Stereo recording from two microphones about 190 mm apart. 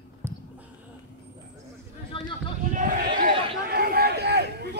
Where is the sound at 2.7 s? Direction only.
45° right (ahead or behind).